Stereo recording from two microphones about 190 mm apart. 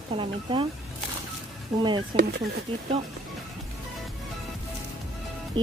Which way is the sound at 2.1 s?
25° right (ahead or behind).